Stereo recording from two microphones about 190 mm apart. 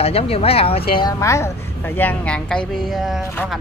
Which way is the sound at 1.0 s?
15° left (ahead or behind).